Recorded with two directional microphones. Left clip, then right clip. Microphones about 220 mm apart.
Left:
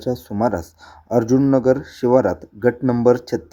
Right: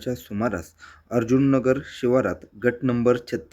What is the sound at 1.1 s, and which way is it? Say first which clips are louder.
Speech: left 5 dB; 20° left (ahead or behind).